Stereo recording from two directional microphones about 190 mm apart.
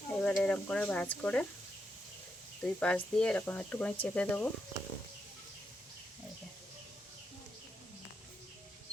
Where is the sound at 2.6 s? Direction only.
5° left (ahead or behind).